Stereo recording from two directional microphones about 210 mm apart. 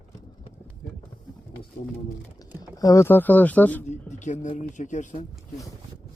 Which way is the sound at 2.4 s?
15° left (ahead or behind).